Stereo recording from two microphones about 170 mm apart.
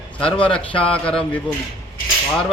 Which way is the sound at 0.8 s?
5° left (ahead or behind).